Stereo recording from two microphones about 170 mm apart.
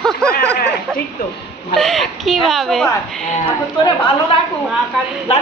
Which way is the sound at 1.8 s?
Centre (ahead or behind).